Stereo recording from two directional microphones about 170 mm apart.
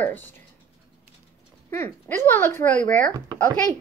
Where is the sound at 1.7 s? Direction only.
15° left (ahead or behind).